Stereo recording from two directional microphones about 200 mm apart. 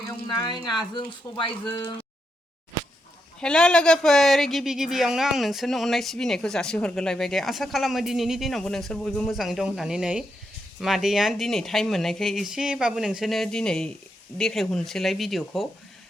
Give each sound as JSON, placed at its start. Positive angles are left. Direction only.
{"t": 0.3, "sound": "speech", "side_deg": 20}
{"t": 3.4, "sound": "speech", "side_deg": 5}